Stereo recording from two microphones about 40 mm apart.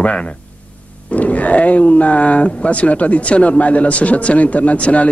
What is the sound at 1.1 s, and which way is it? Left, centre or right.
Speech, left.